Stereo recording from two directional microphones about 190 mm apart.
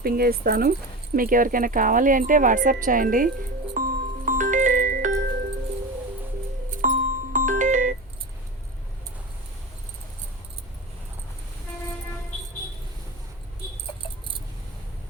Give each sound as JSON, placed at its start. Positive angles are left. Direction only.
{"t": 0.0, "sound": "speech", "side_deg": -50}
{"t": 3.8, "sound": "music", "side_deg": -40}
{"t": 6.7, "sound": "music", "side_deg": -45}